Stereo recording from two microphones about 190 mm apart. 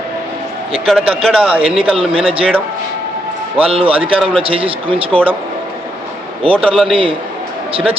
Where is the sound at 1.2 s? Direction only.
5° right (ahead or behind).